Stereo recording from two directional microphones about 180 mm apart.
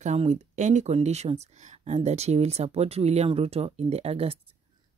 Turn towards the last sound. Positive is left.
turn(degrees=-30)  # may be behind; listen again after turning